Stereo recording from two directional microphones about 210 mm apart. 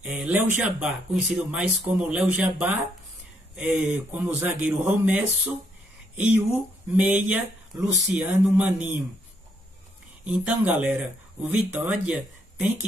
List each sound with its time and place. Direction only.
0.0 s speech: 5° right (ahead or behind)
10.2 s speech: 5° right (ahead or behind)